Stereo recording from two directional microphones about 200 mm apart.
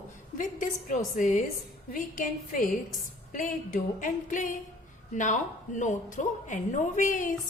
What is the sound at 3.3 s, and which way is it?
A woman's voice, 45° left (ahead or behind).